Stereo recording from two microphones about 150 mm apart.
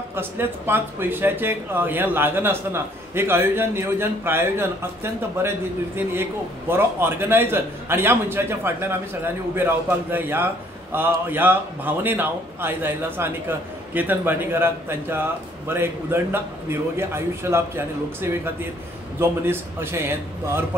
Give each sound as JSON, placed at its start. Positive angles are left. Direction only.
{"t": 0.1, "sound": "a man's voice", "side_deg": -15}
{"t": 6.7, "sound": "a man's voice", "side_deg": -15}